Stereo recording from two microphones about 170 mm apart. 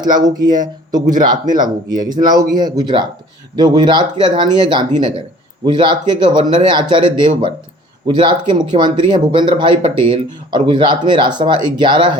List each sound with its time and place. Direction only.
0.0 s speech: 25° right (ahead or behind)